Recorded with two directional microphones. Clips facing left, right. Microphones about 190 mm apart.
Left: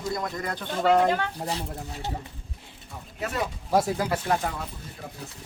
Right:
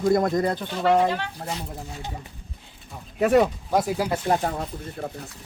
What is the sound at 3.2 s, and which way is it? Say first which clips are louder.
Speech: right 12 dB; 60° right (ahead or behind).